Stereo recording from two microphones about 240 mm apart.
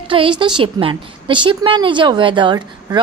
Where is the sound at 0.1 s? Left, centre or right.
Right.